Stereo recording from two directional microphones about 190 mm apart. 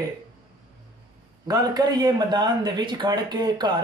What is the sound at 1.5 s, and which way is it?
A man's voice, 20° right (ahead or behind).